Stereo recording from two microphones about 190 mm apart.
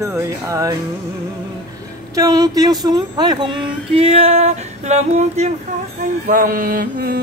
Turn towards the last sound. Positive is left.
turn(degrees=-50)  # may be behind; listen again after turning